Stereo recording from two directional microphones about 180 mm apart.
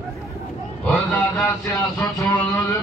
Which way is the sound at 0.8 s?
5° left (ahead or behind).